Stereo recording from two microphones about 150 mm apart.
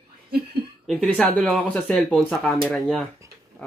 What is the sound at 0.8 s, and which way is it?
Speech, centre (ahead or behind).